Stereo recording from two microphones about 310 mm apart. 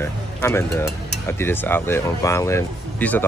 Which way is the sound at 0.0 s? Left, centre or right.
Centre.